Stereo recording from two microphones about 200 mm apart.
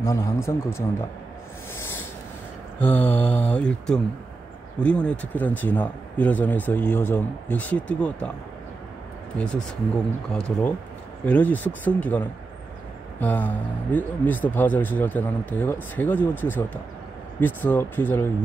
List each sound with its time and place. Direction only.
0.0 s speech: 15° left (ahead or behind)
2.8 s speech: 10° left (ahead or behind)
10.3 s speech: 5° left (ahead or behind)